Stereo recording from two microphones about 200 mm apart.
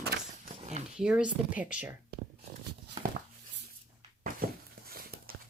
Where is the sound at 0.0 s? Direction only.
50° right (ahead or behind).